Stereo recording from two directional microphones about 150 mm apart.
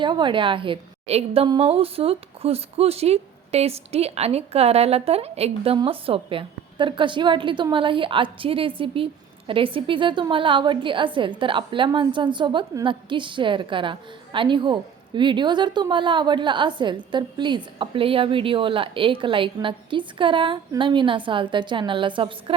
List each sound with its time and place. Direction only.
0.0 s a woman's voice: 30° right (ahead or behind)